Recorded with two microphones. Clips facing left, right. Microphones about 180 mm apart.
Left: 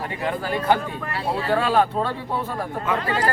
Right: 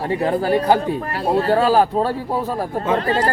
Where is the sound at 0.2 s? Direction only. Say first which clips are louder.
Right 6 dB; 35° right (ahead or behind).